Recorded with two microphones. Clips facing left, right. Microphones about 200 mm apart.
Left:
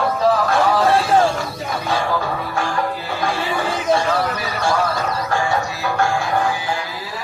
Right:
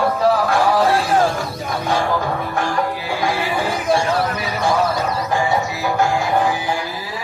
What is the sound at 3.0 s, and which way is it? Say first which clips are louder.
Horse: right 2 dB; 10° right (ahead or behind).